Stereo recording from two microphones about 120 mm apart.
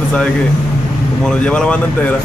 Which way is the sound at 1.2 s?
5° left (ahead or behind).